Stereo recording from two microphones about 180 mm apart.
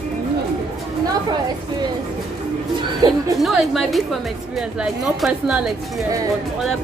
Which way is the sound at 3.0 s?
20° right (ahead or behind).